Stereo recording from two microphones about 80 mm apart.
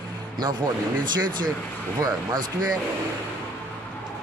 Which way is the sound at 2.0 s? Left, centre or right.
Right.